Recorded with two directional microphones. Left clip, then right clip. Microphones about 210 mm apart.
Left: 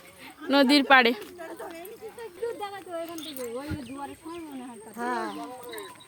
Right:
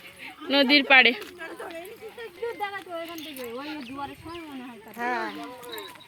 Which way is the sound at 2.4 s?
5° right (ahead or behind).